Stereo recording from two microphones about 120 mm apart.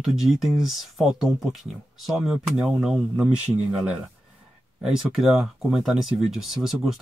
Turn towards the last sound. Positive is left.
turn(degrees=0)  # may be behind; listen again after turning